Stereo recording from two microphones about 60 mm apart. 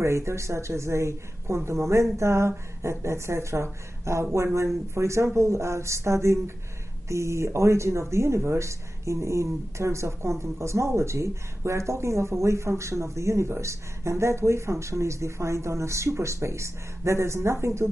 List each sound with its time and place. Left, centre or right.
0.0 s speech: right